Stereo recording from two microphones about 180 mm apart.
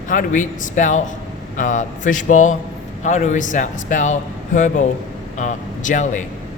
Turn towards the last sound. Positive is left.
turn(degrees=45)  # may be behind; listen again after turning